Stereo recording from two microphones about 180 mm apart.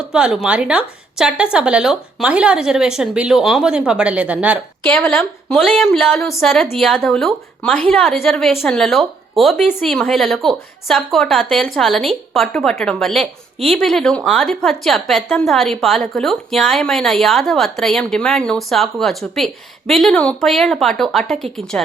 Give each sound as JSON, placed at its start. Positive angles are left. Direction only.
{"t": 0.1, "sound": "a woman's voice", "side_deg": -5}
{"t": 4.8, "sound": "a woman's voice", "side_deg": 5}
{"t": 6.1, "sound": "a woman's voice", "side_deg": 15}
{"t": 6.4, "sound": "a woman's voice", "side_deg": 0}